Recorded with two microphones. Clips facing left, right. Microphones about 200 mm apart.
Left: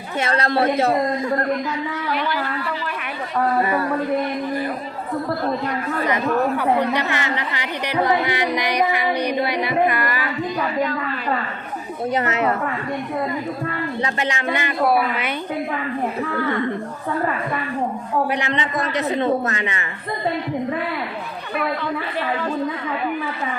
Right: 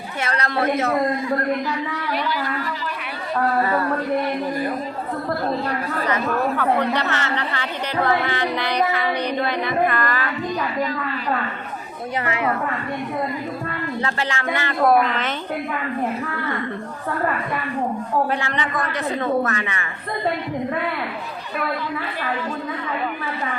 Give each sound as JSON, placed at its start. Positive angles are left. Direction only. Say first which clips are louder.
{"t": 0.2, "sound": "a woman's voice", "louder": "left 4 dB", "side_deg": 30}
{"t": 6.6, "sound": "speech", "louder": "left 1 dB", "side_deg": 15}
{"t": 12.1, "sound": "a man's voice", "louder": "left 3 dB", "side_deg": 25}
{"t": 14.0, "sound": "speech", "louder": "left 2 dB", "side_deg": 20}
{"t": 14.8, "sound": "speech", "louder": "right 3 dB", "side_deg": 5}
{"t": 18.3, "sound": "a man's voice", "louder": "left 2 dB", "side_deg": 20}